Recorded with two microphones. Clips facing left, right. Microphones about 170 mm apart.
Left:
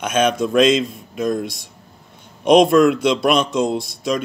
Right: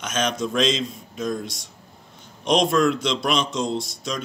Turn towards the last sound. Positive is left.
turn(degrees=55)  # may be behind; listen again after turning